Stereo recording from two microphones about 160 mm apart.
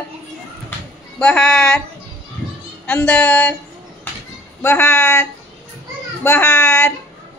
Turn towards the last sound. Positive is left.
turn(degrees=20)  # may be behind; listen again after turning